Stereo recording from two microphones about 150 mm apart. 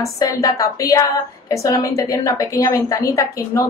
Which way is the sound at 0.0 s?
20° left (ahead or behind).